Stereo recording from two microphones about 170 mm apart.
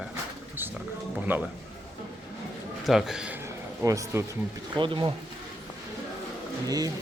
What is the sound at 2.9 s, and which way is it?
Speech, centre (ahead or behind).